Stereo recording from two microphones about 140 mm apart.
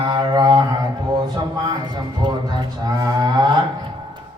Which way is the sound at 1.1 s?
30° right (ahead or behind).